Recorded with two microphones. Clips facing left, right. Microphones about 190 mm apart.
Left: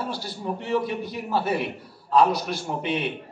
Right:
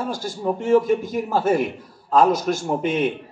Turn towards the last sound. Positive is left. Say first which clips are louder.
# right 6 dB
turn(degrees=-45)  # may be behind; listen again after turning